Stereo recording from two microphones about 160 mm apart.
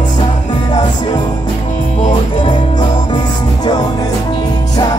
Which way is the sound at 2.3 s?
30° left (ahead or behind).